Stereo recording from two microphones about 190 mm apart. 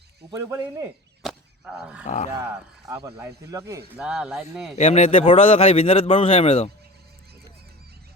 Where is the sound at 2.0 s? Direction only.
40° left (ahead or behind).